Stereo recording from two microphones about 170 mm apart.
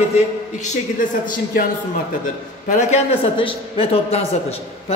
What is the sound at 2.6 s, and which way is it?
Speech, 50° left (ahead or behind).